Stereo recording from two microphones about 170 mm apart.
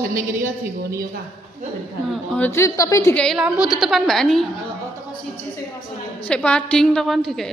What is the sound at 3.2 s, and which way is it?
A woman's voice, centre (ahead or behind).